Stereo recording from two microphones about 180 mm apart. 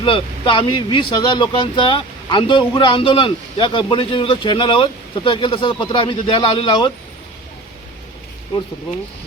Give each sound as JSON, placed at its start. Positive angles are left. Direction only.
{"t": 0.0, "sound": "speech", "side_deg": 30}